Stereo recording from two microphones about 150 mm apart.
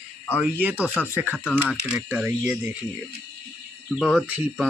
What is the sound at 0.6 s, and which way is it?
Speech, 10° right (ahead or behind).